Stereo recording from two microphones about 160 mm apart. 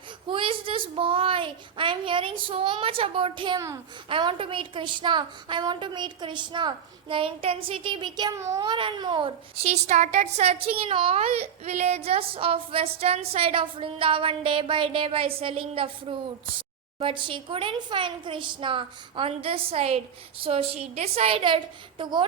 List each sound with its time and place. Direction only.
0.3 s a woman's voice: 35° right (ahead or behind)